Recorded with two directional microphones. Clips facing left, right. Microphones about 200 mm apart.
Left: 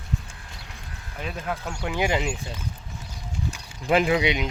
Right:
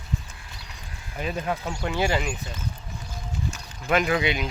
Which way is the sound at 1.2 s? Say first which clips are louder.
Right 3 dB; centre (ahead or behind).